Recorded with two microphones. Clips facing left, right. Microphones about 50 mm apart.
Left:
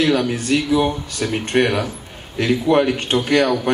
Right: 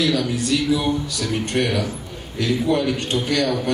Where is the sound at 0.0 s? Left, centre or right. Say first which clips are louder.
Left 3 dB; left.